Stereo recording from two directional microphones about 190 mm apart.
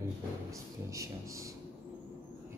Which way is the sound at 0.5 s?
15° right (ahead or behind).